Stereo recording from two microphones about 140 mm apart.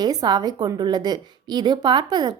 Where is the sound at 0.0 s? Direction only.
30° right (ahead or behind).